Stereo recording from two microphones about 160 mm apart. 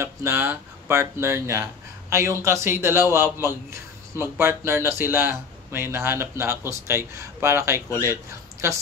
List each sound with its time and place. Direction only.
0.0 s speech: 15° right (ahead or behind)